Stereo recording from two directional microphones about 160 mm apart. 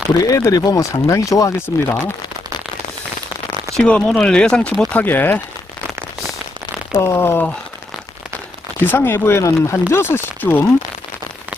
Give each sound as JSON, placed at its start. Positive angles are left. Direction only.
{"t": 0.2, "sound": "speech", "side_deg": 20}
{"t": 3.7, "sound": "speech", "side_deg": 5}
{"t": 6.9, "sound": "speech", "side_deg": 15}
{"t": 8.8, "sound": "speech", "side_deg": 15}